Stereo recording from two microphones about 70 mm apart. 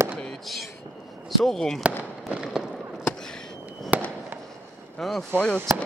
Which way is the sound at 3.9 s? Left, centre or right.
Right.